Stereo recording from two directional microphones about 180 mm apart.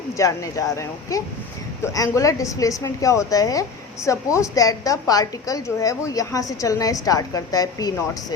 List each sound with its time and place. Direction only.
0.2 s a woman's voice: 20° left (ahead or behind)